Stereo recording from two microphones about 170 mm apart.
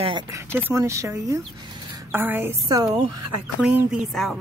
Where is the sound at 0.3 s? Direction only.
15° right (ahead or behind).